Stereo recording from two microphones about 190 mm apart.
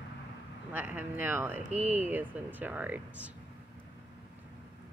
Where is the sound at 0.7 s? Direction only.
10° right (ahead or behind).